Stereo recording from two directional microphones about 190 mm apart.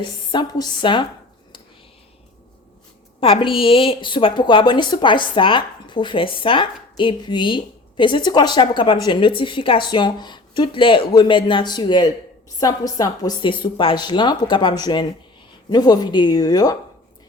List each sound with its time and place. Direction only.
0.0 s a woman's voice: 25° left (ahead or behind)
3.2 s a woman's voice: 25° left (ahead or behind)